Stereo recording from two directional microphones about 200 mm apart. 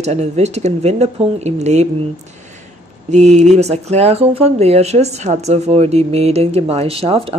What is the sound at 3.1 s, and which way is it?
Speech, 35° right (ahead or behind).